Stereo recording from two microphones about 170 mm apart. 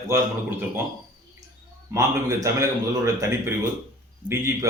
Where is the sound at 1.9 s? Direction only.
15° right (ahead or behind).